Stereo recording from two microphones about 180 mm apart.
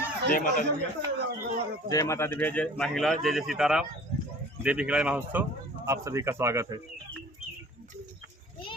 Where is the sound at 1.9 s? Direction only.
15° left (ahead or behind); by 6.7 s 15° right (ahead or behind).